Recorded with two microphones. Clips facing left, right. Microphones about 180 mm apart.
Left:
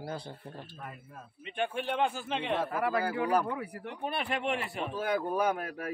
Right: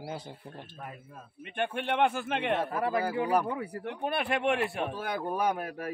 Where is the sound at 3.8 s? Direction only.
60° right (ahead or behind).